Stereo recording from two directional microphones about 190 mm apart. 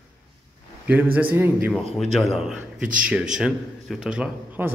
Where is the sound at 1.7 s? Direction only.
Centre (ahead or behind).